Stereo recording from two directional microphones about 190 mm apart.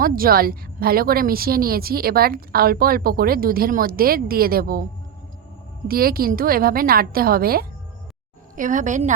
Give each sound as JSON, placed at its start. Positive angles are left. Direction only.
{"t": 0.0, "sound": "a woman's voice", "side_deg": -50}
{"t": 5.9, "sound": "a woman's voice", "side_deg": -50}